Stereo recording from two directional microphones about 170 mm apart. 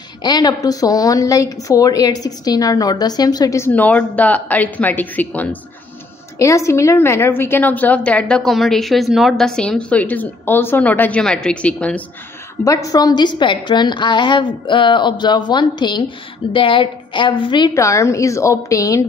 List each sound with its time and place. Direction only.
0.2 s a woman's voice: 25° left (ahead or behind); by 12.0 s 5° left (ahead or behind)
12.6 s a woman's voice: 20° left (ahead or behind)